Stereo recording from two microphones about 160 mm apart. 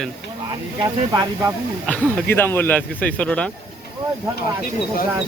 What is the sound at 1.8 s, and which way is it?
Speech, 10° left (ahead or behind).